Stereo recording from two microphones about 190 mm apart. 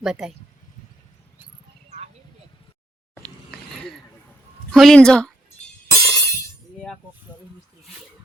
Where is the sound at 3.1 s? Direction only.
5° left (ahead or behind).